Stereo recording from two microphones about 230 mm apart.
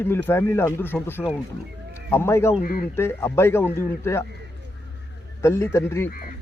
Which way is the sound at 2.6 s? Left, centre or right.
Left.